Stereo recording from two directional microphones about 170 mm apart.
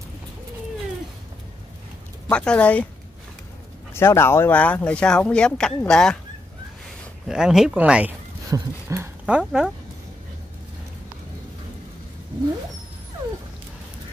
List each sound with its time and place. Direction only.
2.2 s speech: 5° left (ahead or behind)
3.9 s speech: 15° left (ahead or behind)
7.2 s speech: 5° right (ahead or behind)
9.2 s speech: 5° right (ahead or behind)